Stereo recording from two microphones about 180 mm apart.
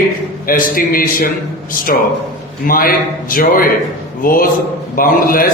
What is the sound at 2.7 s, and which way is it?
Speech, 55° left (ahead or behind).